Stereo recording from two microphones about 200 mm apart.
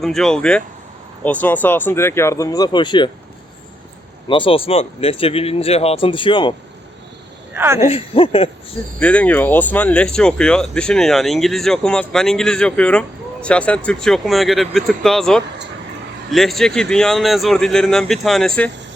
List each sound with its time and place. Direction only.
0.0 s speech: centre (ahead or behind); by 3.1 s 25° left (ahead or behind)
4.3 s speech: 25° left (ahead or behind)
7.5 s speech: 10° right (ahead or behind)
7.9 s speech: 30° left (ahead or behind)
9.0 s speech: 5° left (ahead or behind)